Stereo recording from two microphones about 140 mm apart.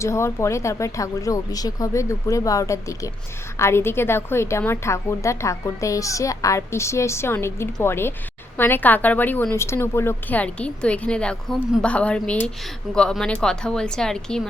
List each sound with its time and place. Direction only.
0.0 s a woman's voice: 20° left (ahead or behind); by 14.4 s 5° left (ahead or behind)